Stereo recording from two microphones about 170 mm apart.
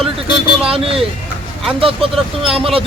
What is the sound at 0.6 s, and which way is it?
Vehicle, 35° right (ahead or behind).